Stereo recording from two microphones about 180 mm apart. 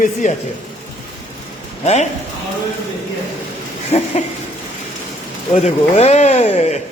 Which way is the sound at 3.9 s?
40° left (ahead or behind).